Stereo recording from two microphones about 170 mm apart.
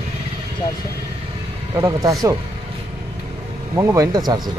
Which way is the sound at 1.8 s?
20° right (ahead or behind).